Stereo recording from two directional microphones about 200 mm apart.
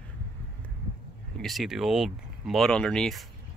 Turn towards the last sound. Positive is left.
turn(degrees=0)  # may be behind; listen again after turning